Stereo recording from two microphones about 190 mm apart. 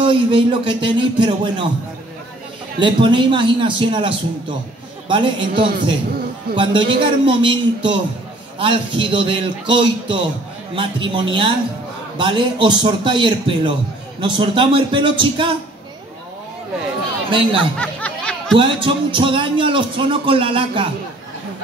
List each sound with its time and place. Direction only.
0.0 s a man's voice: 25° right (ahead or behind)
2.8 s a man's voice: 25° right (ahead or behind)
6.5 s a man's voice: 25° right (ahead or behind)
17.3 s speech: 25° right (ahead or behind)
17.7 s music: 5° left (ahead or behind)
18.6 s a man's voice: 25° right (ahead or behind)